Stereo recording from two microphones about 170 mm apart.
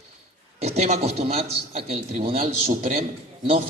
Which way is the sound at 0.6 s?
40° right (ahead or behind).